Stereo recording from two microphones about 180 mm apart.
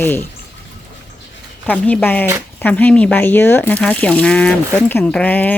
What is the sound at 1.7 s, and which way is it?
Speech, 10° left (ahead or behind).